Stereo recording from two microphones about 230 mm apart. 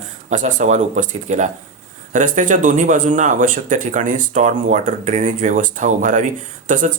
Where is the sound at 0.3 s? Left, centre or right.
Right.